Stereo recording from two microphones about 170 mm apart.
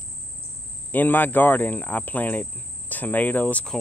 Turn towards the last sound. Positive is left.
turn(degrees=5)  # may be behind; listen again after turning